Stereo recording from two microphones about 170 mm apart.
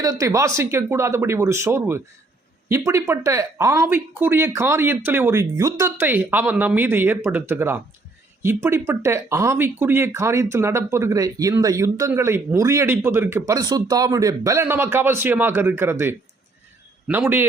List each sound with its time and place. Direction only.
0.0 s speech: 20° right (ahead or behind)